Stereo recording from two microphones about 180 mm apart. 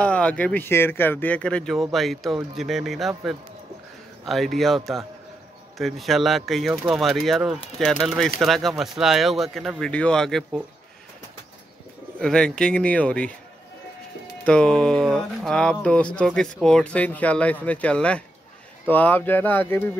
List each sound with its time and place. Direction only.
0.0 s speech: 5° left (ahead or behind)
12.2 s speech: 5° left (ahead or behind)
14.4 s speech: 5° left (ahead or behind)